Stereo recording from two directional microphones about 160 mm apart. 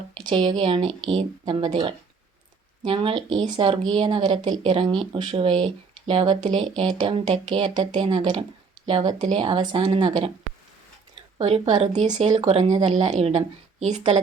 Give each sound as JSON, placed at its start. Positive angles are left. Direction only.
{"t": 0.1, "sound": "speech", "side_deg": -30}
{"t": 11.3, "sound": "speech", "side_deg": -40}